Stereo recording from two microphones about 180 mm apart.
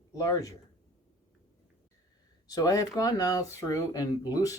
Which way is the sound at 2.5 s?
20° left (ahead or behind).